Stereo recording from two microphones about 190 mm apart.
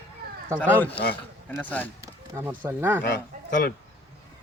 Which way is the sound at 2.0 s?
15° right (ahead or behind).